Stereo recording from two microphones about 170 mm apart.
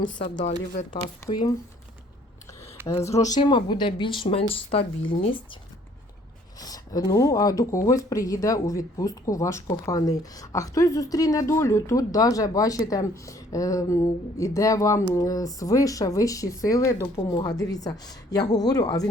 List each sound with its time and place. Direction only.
0.2 s speech: 50° left (ahead or behind)
1.3 s speech: 25° left (ahead or behind)
2.8 s speech: 20° left (ahead or behind); by 5.5 s 35° left (ahead or behind)
6.6 s speech: 20° left (ahead or behind)